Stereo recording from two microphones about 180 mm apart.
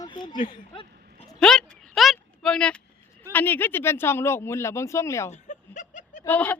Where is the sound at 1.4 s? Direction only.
5° left (ahead or behind).